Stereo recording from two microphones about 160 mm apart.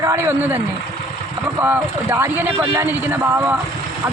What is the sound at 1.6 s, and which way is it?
Speech, 10° right (ahead or behind).